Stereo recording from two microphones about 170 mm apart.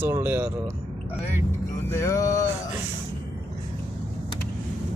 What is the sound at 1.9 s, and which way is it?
Music, 15° left (ahead or behind).